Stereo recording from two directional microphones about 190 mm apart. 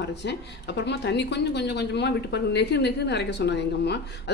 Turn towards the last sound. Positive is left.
turn(degrees=60)  # may be behind; listen again after turning